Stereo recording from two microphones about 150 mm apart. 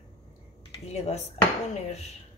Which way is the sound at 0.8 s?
45° left (ahead or behind).